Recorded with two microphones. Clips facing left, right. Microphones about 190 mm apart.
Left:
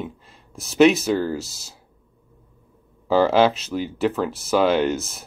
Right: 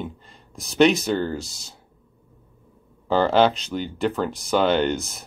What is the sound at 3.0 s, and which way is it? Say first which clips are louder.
Speech: left 1 dB; 5° left (ahead or behind).